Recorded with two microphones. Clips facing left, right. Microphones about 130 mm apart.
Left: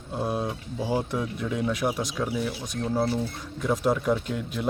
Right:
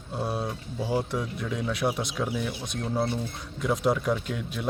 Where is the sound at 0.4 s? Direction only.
10° left (ahead or behind).